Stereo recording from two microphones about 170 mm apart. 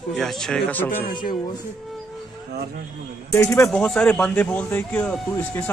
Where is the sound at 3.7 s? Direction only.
5° left (ahead or behind).